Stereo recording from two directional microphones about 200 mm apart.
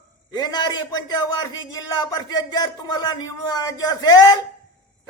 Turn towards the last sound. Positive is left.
turn(degrees=20)  # may be behind; listen again after turning